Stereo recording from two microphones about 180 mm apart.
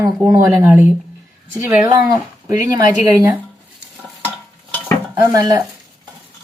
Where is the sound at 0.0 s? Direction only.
15° right (ahead or behind).